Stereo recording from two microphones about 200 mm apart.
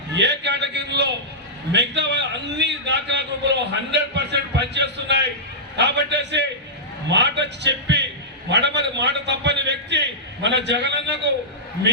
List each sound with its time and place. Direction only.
0.2 s a man's voice: 60° right (ahead or behind)